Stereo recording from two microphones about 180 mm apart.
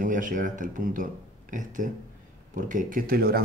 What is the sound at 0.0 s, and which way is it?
A man's voice, 45° right (ahead or behind).